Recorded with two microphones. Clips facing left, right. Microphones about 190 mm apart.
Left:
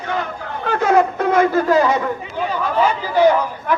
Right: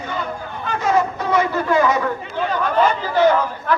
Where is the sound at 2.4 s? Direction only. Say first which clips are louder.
Right 1 dB; 5° left (ahead or behind).